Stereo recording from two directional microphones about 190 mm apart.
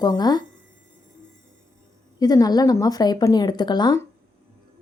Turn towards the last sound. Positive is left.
turn(degrees=20)  # may be behind; listen again after turning